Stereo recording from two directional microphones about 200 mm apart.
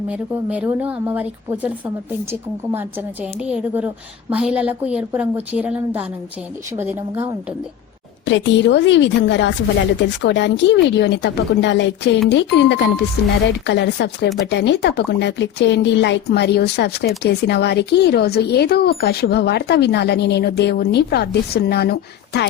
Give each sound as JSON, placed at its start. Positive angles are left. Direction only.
{"t": 0.1, "sound": "a woman's voice", "side_deg": -5}
{"t": 3.5, "sound": "a woman's voice", "side_deg": -5}
{"t": 8.2, "sound": "speech", "side_deg": 65}